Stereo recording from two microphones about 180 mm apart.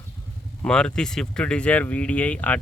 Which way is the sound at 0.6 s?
5° left (ahead or behind).